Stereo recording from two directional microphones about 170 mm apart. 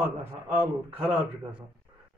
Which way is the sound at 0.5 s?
10° right (ahead or behind).